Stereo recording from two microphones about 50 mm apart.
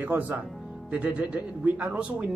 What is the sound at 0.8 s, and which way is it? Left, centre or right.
Speech, right.